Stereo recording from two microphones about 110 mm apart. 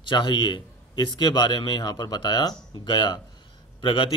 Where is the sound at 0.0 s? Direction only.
45° left (ahead or behind).